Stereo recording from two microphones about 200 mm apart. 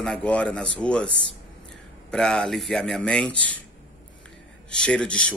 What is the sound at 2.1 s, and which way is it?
Speech, 5° left (ahead or behind).